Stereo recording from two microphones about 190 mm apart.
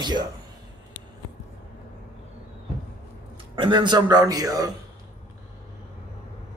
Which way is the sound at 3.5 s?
25° right (ahead or behind).